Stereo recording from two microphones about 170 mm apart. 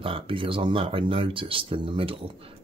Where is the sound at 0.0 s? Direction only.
30° right (ahead or behind).